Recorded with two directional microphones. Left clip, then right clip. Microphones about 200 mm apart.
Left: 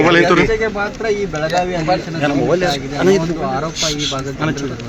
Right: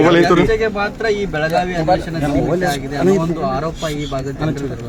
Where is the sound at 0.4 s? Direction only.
Centre (ahead or behind).